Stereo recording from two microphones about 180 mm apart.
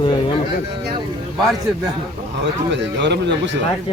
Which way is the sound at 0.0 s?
30° left (ahead or behind).